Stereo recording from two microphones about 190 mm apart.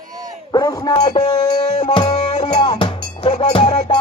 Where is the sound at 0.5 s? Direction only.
20° left (ahead or behind).